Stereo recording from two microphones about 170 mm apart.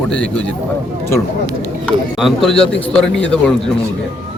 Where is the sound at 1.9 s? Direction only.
Centre (ahead or behind).